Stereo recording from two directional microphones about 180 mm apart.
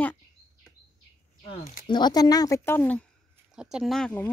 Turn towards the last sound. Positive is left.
turn(degrees=5)  # may be behind; listen again after turning